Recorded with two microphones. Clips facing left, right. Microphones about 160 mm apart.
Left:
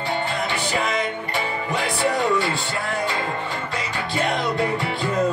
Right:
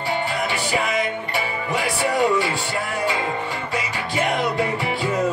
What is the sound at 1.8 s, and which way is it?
Music, 10° right (ahead or behind).